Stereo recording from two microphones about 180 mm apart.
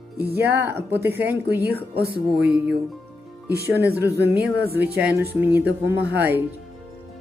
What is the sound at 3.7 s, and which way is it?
Speech, 10° right (ahead or behind).